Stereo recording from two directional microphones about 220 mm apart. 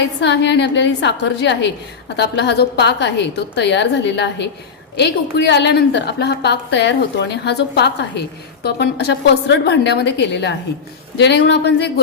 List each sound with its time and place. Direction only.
0.0 s a woman's voice: 50° left (ahead or behind)
5.5 s a woman's voice: 50° left (ahead or behind)